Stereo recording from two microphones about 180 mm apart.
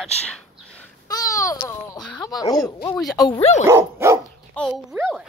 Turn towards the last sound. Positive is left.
turn(degrees=5)  # may be behind; listen again after turning